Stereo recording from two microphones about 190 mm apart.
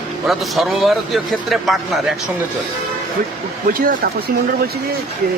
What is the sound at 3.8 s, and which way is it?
Speech, 50° right (ahead or behind).